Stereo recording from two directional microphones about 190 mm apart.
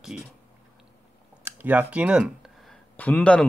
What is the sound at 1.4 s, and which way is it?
Speech, 10° right (ahead or behind).